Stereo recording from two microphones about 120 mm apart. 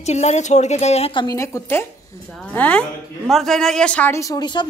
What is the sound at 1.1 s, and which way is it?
Speech, 30° left (ahead or behind).